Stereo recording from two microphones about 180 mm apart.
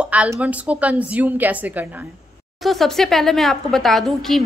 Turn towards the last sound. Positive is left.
turn(degrees=0)  # may be behind; listen again after turning